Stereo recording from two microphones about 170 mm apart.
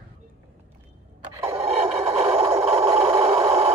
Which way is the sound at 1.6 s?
40° right (ahead or behind).